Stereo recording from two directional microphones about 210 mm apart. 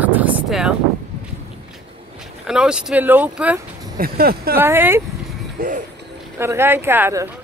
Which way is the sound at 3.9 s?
45° right (ahead or behind).